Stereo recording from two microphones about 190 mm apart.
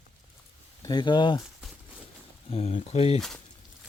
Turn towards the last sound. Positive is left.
turn(degrees=35)  # may be behind; listen again after turning